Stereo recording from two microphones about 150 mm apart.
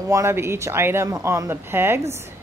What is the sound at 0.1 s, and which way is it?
A woman's voice, 20° right (ahead or behind).